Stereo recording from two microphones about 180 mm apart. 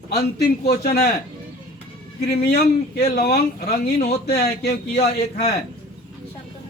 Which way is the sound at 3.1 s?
60° left (ahead or behind).